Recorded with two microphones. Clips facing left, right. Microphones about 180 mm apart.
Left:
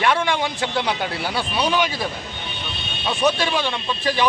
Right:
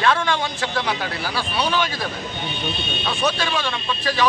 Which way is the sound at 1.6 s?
15° left (ahead or behind).